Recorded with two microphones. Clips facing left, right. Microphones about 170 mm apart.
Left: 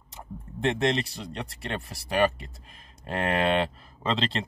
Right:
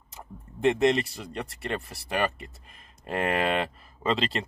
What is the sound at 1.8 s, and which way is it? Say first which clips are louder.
Speech: left 6 dB; 35° left (ahead or behind).